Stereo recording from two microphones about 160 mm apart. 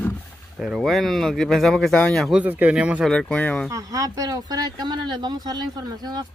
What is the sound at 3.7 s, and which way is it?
Speech, 20° right (ahead or behind).